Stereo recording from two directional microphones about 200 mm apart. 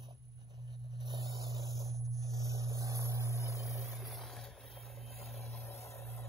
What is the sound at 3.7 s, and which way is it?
Music, centre (ahead or behind).